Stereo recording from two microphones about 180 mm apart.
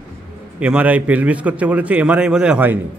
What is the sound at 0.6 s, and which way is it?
A man's voice, 5° right (ahead or behind).